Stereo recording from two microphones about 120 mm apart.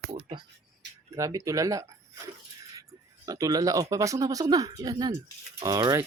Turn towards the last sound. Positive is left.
turn(degrees=-25)  # may be behind; listen again after turning